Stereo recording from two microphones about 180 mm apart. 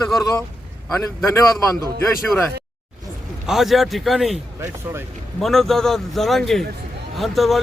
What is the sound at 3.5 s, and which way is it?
A man's voice, centre (ahead or behind).